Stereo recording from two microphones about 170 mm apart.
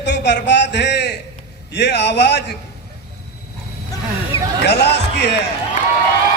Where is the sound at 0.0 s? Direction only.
90° left.